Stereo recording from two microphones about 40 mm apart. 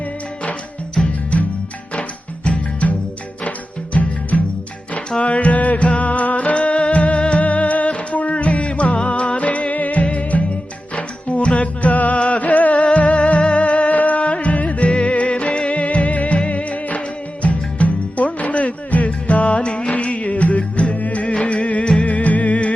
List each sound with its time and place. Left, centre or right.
0.9 s music: left
3.9 s music: left
22.0 s music: left